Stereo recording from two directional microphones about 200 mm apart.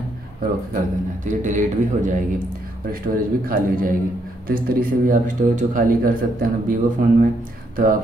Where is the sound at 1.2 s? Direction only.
40° right (ahead or behind).